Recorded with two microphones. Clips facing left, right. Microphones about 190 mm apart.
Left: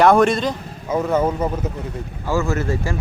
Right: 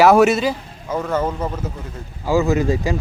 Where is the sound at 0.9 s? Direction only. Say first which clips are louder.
Left 2 dB; 10° left (ahead or behind).